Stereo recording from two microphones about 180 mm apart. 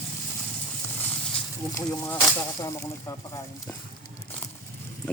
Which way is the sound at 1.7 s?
15° left (ahead or behind).